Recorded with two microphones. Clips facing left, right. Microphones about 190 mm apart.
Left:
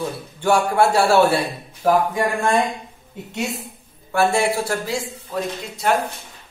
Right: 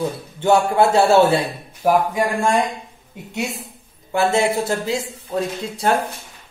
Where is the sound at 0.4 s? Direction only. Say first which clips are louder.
Right 2 dB; 20° right (ahead or behind).